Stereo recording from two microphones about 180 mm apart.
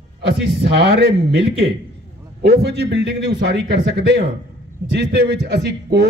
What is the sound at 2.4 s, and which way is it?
A man's voice, 60° right (ahead or behind).